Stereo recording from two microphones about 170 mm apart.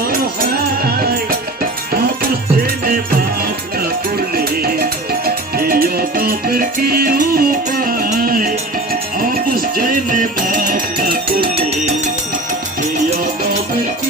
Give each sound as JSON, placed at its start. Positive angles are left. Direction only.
{"t": 2.6, "sound": "music", "side_deg": -55}
{"t": 4.4, "sound": "music", "side_deg": -65}